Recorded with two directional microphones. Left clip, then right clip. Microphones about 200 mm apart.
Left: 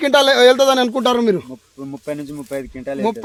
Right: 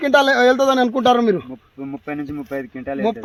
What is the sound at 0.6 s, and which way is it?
Speech, 35° left (ahead or behind).